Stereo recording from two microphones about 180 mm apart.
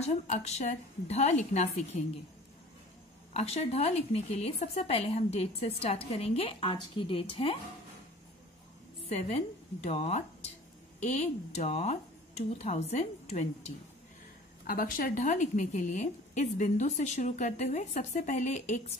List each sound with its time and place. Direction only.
0.0 s speech: 40° left (ahead or behind)
3.3 s speech: 35° left (ahead or behind)
9.1 s speech: 40° left (ahead or behind)
14.7 s a woman's voice: 50° left (ahead or behind)